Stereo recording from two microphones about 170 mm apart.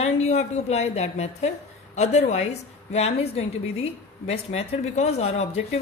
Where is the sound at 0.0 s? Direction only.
40° left (ahead or behind).